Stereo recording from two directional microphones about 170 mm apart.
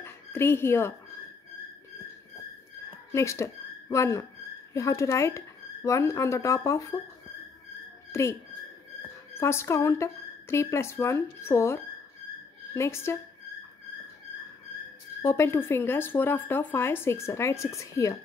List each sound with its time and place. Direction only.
0.0 s a sound: 15° left (ahead or behind)
3.1 s speech: 15° left (ahead or behind)
8.1 s speech: 15° left (ahead or behind)
9.4 s speech: 15° left (ahead or behind)
15.2 s speech: 15° left (ahead or behind)